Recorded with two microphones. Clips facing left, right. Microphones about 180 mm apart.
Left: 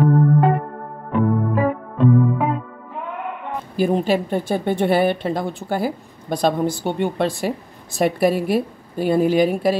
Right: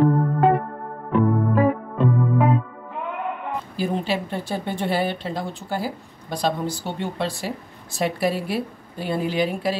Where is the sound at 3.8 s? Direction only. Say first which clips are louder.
Left 7 dB; 45° left (ahead or behind).